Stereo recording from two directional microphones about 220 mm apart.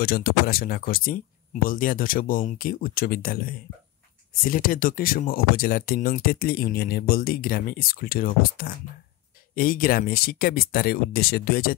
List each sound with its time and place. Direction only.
0.0 s speech: 45° left (ahead or behind)